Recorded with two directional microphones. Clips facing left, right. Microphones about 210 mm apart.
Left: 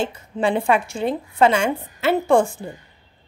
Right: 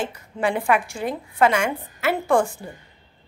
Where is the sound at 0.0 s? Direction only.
25° left (ahead or behind).